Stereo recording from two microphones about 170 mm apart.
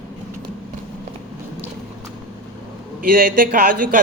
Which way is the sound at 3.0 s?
55° right (ahead or behind).